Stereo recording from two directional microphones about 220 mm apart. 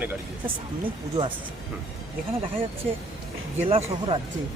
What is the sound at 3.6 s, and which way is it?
Speech, 25° right (ahead or behind).